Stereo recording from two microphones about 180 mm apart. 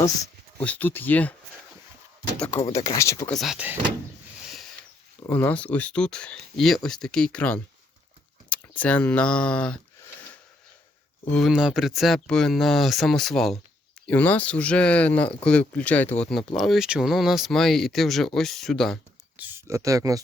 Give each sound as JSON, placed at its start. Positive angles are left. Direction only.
{"t": 0.6, "sound": "speech", "side_deg": 10}
{"t": 2.6, "sound": "speech", "side_deg": 20}
{"t": 3.3, "sound": "speech", "side_deg": 0}
{"t": 5.2, "sound": "speech", "side_deg": 10}
{"t": 11.3, "sound": "speech", "side_deg": 0}
{"t": 19.4, "sound": "speech", "side_deg": -10}